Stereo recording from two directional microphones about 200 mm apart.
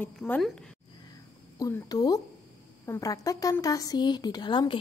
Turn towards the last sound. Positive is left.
turn(degrees=25)  # may be behind; listen again after turning